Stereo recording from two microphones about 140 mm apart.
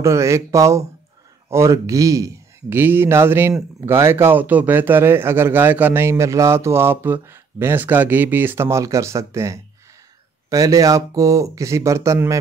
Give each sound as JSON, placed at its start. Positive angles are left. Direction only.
{"t": 0.0, "sound": "a man's voice", "side_deg": -20}